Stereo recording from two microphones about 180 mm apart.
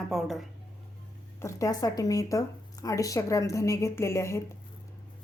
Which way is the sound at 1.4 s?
15° left (ahead or behind).